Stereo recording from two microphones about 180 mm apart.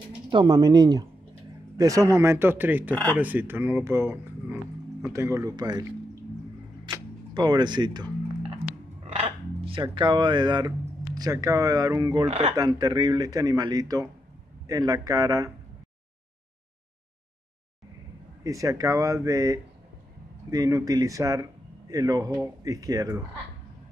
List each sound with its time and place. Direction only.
0.3 s speech: 25° right (ahead or behind)
6.9 s music: 25° right (ahead or behind)
7.3 s speech: 25° right (ahead or behind)
12.3 s speech: 35° right (ahead or behind)
12.5 s speech: 20° right (ahead or behind)
18.4 s speech: 20° right (ahead or behind)